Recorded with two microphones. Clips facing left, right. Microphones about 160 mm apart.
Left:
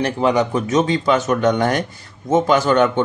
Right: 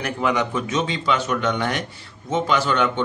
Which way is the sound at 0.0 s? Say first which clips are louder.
Left 5 dB; 35° left (ahead or behind).